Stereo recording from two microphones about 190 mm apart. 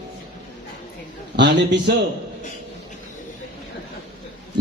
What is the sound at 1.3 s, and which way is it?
Speech, 65° right (ahead or behind).